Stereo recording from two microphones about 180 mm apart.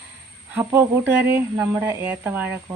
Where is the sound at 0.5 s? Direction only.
15° right (ahead or behind).